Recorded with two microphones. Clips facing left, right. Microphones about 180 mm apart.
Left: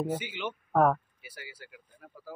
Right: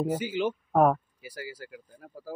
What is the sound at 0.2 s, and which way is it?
Speech, 40° right (ahead or behind).